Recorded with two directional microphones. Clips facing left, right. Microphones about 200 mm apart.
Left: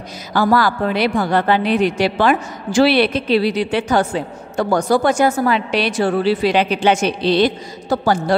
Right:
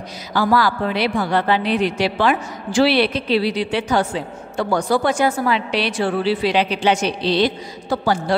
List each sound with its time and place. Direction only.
0.3 s a woman's voice: 50° left (ahead or behind)